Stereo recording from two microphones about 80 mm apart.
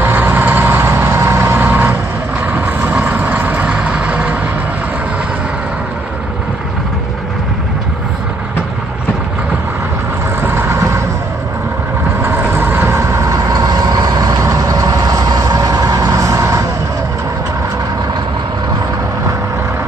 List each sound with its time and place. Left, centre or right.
0.0 s vehicle: right
10.4 s vehicle: right
12.2 s vehicle: right